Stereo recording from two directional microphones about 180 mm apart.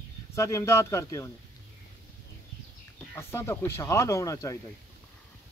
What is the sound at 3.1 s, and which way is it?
Speech, 15° left (ahead or behind).